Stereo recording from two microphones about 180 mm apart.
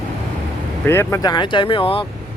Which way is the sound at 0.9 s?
15° left (ahead or behind).